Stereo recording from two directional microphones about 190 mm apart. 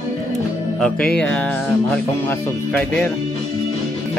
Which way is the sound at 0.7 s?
5° left (ahead or behind).